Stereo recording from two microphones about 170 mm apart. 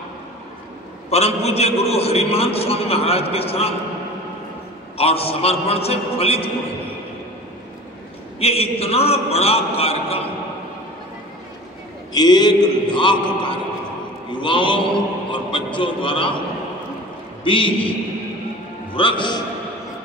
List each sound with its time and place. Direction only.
1.1 s a man's voice: 40° left (ahead or behind)
4.9 s a man's voice: 35° left (ahead or behind)
8.4 s a man's voice: 35° left (ahead or behind)
12.1 s speech: 25° left (ahead or behind)
17.4 s a man's voice: 30° left (ahead or behind)
18.9 s speech: 30° left (ahead or behind)